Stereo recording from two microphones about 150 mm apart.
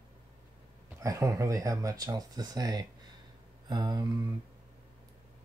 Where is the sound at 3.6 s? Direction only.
30° right (ahead or behind).